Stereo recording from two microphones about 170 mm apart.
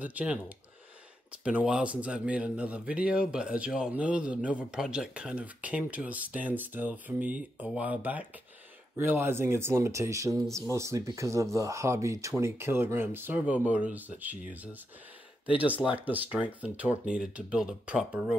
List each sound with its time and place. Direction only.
0.0 s speech: 10° right (ahead or behind)